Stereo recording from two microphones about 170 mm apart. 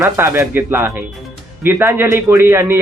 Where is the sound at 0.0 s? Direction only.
15° right (ahead or behind).